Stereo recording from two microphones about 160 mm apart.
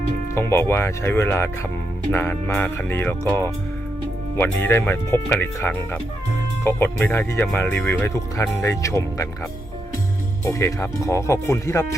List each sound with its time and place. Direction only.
0.3 s speech: 15° left (ahead or behind)
10.4 s speech: 20° left (ahead or behind)